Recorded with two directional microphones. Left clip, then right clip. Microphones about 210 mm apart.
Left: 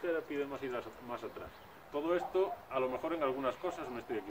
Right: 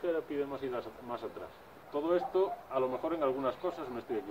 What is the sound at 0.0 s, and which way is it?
A man's voice, 15° left (ahead or behind).